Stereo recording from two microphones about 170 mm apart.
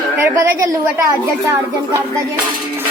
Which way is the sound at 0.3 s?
15° right (ahead or behind).